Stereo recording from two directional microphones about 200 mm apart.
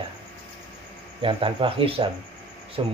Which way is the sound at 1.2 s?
25° right (ahead or behind).